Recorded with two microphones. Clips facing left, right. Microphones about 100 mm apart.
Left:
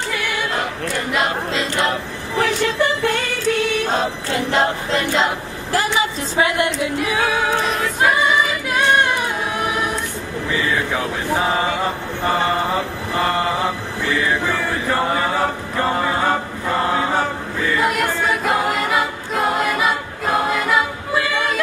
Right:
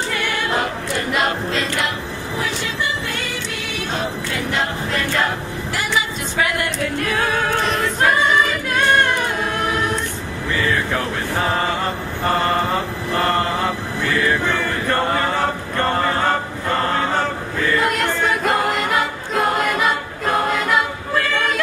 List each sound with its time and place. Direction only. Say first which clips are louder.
2.3 s music: left 7 dB; 55° left (ahead or behind); by 5.3 s 25° left (ahead or behind)
5.7 s a woman's voice: left 4 dB; 35° left (ahead or behind)
6.3 s a woman's voice: left 3 dB; 25° left (ahead or behind)
7.0 s choir: even; 10° left (ahead or behind)
10.9 s a sound: left 1 dB; 10° left (ahead or behind)
14.2 s chant: right 1 dB; 10° left (ahead or behind)
17.7 s choir: left 1 dB; 5° left (ahead or behind)